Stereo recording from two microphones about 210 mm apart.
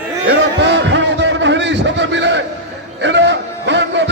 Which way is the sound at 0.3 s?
60° right (ahead or behind).